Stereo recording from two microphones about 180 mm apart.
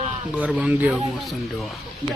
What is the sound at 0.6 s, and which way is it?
Speech, 5° right (ahead or behind).